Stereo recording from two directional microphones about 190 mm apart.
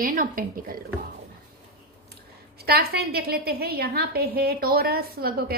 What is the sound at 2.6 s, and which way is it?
A woman's voice, 55° right (ahead or behind).